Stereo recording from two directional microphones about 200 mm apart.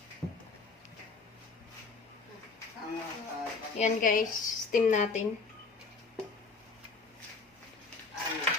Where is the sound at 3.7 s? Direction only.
40° left (ahead or behind).